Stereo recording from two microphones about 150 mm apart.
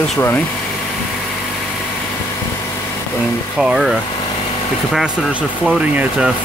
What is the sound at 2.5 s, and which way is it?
Vehicle, 20° left (ahead or behind).